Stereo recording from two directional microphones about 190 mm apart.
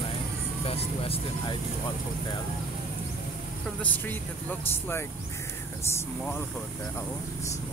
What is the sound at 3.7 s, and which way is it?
Speech, 10° left (ahead or behind).